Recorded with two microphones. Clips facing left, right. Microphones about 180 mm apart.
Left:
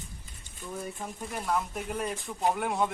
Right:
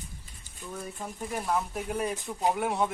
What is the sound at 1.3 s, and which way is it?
A man's voice, 5° right (ahead or behind).